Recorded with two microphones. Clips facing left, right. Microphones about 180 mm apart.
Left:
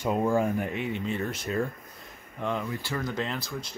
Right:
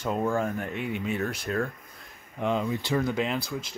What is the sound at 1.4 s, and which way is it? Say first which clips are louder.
Speech: even; 5° left (ahead or behind).